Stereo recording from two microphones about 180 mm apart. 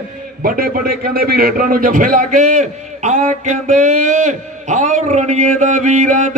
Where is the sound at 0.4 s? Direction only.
55° right (ahead or behind).